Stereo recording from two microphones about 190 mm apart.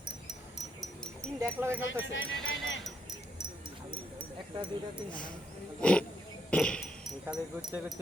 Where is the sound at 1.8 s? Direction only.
75° left (ahead or behind).